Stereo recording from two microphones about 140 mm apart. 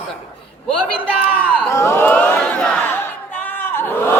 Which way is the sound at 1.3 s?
15° left (ahead or behind).